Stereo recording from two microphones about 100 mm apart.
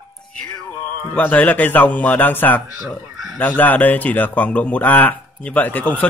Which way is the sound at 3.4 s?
15° left (ahead or behind).